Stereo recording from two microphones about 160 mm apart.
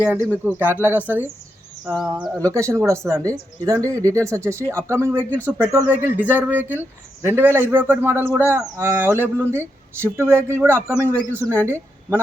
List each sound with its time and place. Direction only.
0.0 s speech: 10° right (ahead or behind)
2.3 s a woman's voice: 20° right (ahead or behind)